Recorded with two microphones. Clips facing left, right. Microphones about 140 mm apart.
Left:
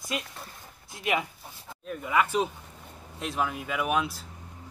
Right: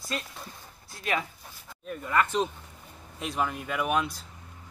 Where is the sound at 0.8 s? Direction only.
15° left (ahead or behind).